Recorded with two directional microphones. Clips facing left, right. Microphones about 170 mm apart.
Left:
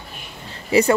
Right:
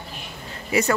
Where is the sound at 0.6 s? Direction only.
30° left (ahead or behind).